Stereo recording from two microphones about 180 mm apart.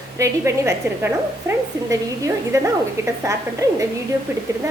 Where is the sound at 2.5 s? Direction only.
20° right (ahead or behind).